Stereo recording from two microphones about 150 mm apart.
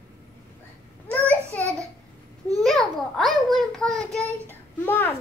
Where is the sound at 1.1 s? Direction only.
10° left (ahead or behind).